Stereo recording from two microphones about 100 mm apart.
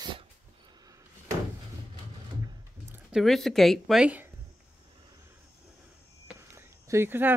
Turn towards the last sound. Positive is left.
turn(degrees=-20)  # may be behind; listen again after turning